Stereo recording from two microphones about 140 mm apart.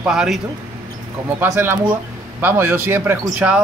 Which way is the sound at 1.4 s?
15° right (ahead or behind).